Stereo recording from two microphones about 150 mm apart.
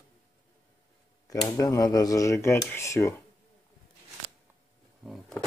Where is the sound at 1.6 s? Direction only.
25° left (ahead or behind).